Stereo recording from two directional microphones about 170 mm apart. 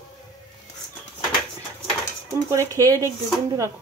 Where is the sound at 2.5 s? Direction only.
20° right (ahead or behind).